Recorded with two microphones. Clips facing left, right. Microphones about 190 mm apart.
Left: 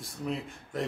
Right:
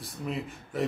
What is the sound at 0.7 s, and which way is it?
Speech, 5° right (ahead or behind).